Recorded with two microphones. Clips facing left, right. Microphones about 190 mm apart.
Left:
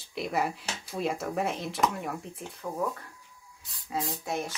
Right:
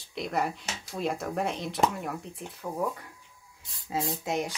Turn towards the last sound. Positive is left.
turn(degrees=-20)  # may be behind; listen again after turning